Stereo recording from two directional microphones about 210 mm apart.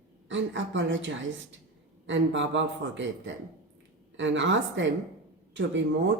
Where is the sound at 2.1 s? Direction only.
60° right (ahead or behind).